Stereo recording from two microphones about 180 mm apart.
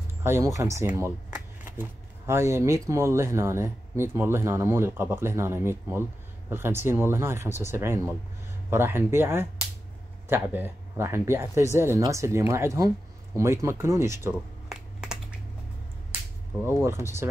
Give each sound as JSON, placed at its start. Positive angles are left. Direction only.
{"t": 0.2, "sound": "speech", "side_deg": -15}
{"t": 14.7, "sound": "a sound", "side_deg": -5}
{"t": 16.8, "sound": "speech", "side_deg": -15}